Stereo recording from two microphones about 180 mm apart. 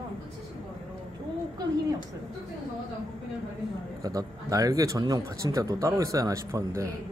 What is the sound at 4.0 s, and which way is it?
A man's voice, 20° right (ahead or behind).